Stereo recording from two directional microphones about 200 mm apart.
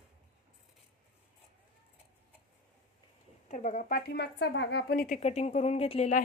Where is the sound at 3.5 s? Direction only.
40° left (ahead or behind).